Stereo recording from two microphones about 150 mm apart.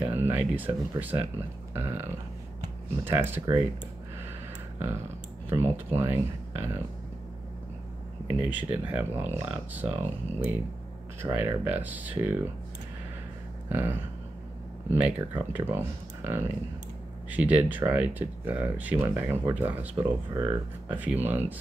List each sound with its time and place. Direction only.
0.0 s speech: 15° right (ahead or behind)
3.1 s speech: 15° right (ahead or behind)
5.5 s speech: 15° right (ahead or behind)
8.3 s speech: 10° right (ahead or behind)
13.7 s a sound: 15° right (ahead or behind)
14.9 s speech: 10° right (ahead or behind)